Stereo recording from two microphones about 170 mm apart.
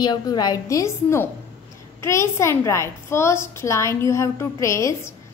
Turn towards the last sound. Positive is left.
turn(degrees=20)  # may be behind; listen again after turning